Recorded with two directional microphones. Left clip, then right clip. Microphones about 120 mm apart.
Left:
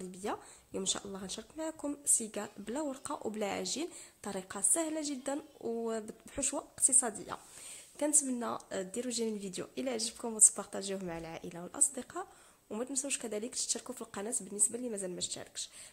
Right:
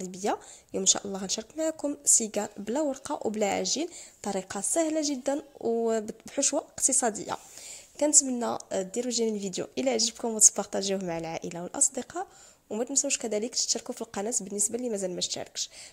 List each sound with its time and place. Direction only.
0.1 s a woman's voice: 40° right (ahead or behind)
6.9 s a woman's voice: 50° right (ahead or behind)